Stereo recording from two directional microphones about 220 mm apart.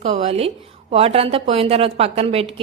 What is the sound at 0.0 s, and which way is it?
A woman's voice, 30° right (ahead or behind).